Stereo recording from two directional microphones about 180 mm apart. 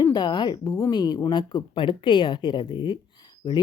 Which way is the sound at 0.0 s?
25° left (ahead or behind).